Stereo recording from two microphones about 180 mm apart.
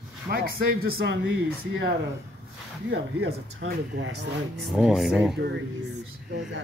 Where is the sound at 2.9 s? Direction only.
75° right (ahead or behind).